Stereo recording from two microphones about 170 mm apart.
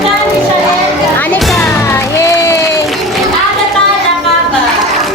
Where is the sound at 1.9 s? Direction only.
15° left (ahead or behind).